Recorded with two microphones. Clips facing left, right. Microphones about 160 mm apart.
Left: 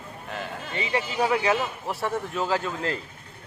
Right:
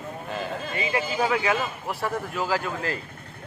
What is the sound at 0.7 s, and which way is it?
A man's voice, 30° left (ahead or behind).